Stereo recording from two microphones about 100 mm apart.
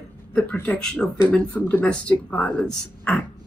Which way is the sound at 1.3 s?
20° left (ahead or behind).